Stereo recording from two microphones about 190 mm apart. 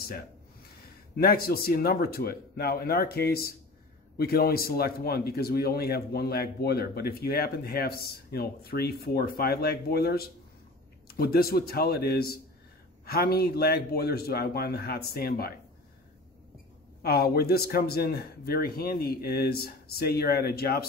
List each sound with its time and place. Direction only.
1.1 s a man's voice: 55° left (ahead or behind)
17.0 s speech: 55° left (ahead or behind)